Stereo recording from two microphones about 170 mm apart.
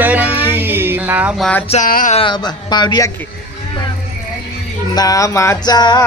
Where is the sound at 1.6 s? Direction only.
50° left (ahead or behind).